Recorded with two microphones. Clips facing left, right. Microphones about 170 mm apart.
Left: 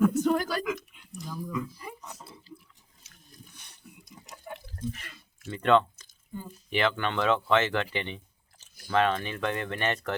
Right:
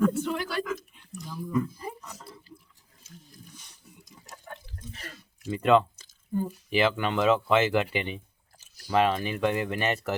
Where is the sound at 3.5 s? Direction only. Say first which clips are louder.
Even; 60° left (ahead or behind).